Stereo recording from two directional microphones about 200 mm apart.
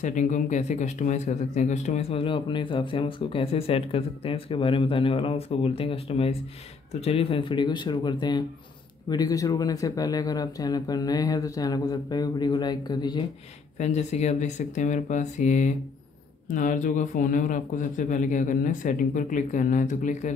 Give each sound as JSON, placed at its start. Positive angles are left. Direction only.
{"t": 0.0, "sound": "speech", "side_deg": 35}
{"t": 13.7, "sound": "speech", "side_deg": 35}